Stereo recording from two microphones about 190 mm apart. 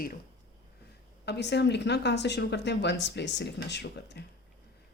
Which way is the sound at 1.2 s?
65° left (ahead or behind).